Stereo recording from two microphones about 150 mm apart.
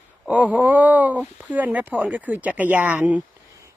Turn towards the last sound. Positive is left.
turn(degrees=-10)  # may be behind; listen again after turning